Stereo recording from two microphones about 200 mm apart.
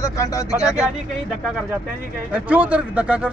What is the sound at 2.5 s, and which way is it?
Speech, 5° right (ahead or behind).